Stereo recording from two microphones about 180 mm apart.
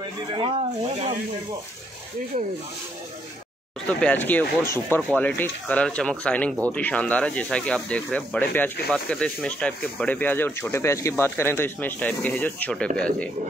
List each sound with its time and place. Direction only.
0.3 s speech: 30° right (ahead or behind)
4.0 s speech: 10° left (ahead or behind)